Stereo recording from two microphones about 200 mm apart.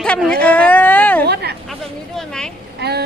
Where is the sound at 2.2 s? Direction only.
5° left (ahead or behind).